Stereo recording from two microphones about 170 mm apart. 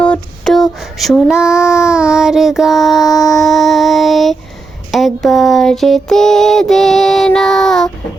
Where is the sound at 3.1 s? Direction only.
20° left (ahead or behind).